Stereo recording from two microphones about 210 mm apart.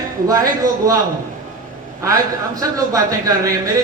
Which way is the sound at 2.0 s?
15° right (ahead or behind).